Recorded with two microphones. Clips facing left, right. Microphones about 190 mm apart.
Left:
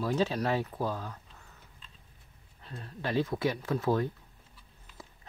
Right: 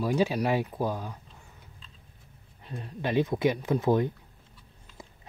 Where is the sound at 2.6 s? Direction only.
15° right (ahead or behind).